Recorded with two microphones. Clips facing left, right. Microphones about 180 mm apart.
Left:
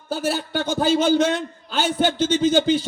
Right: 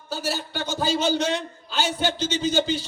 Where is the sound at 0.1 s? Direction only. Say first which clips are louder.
Left 5 dB; 55° left (ahead or behind).